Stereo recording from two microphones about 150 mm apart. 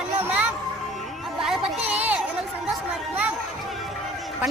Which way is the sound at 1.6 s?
45° right (ahead or behind).